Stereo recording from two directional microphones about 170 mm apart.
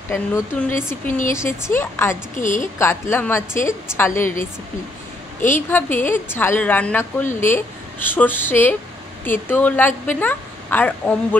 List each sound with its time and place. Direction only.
0.1 s a woman's voice: 15° left (ahead or behind)
2.4 s a woman's voice: 50° left (ahead or behind)
2.8 s a woman's voice: 15° left (ahead or behind)
5.7 s a woman's voice: 10° left (ahead or behind)